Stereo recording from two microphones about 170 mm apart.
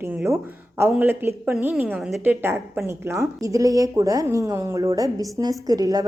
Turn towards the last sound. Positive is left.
turn(degrees=-20)  # may be behind; listen again after turning